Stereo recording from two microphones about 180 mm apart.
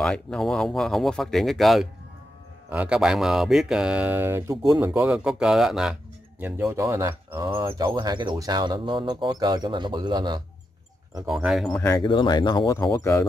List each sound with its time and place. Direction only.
0.0 s speech: 5° left (ahead or behind); by 7.4 s 15° right (ahead or behind)
7.4 s speech: 30° right (ahead or behind)
11.2 s speech: centre (ahead or behind)
12.0 s speech: 25° left (ahead or behind)